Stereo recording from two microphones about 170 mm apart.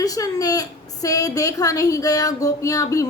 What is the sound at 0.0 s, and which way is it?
A woman's voice, 20° left (ahead or behind).